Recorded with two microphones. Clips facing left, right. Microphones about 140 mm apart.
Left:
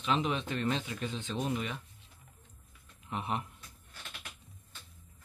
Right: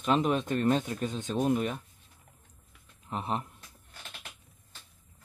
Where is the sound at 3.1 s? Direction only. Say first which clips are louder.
Right 3 dB; 35° right (ahead or behind).